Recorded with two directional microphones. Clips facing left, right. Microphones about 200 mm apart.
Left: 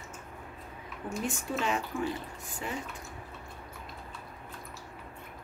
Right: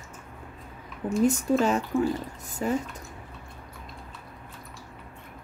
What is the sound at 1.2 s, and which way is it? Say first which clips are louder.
Speech: right 12 dB; 40° right (ahead or behind).